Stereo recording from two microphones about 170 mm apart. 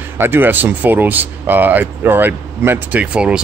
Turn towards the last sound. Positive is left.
turn(degrees=-5)  # may be behind; listen again after turning